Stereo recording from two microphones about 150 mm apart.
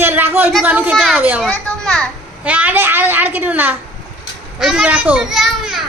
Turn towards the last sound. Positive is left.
turn(degrees=0)  # may be behind; listen again after turning